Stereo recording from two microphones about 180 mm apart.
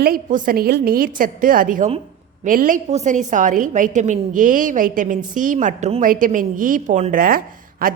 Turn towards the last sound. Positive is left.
turn(degrees=-55)  # may be behind; listen again after turning